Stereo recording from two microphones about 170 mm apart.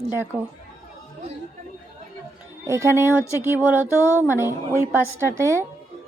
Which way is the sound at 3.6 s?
10° right (ahead or behind).